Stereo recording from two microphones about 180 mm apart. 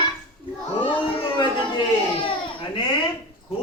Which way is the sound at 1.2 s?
25° left (ahead or behind).